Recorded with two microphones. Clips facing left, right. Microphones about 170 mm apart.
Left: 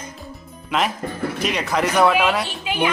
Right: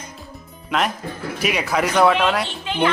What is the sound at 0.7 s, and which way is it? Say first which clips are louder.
A woman's voice: even; centre (ahead or behind).